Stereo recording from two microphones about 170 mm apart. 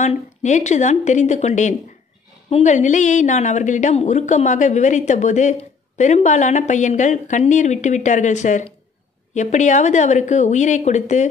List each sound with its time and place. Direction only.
0.0 s a woman's voice: 45° left (ahead or behind)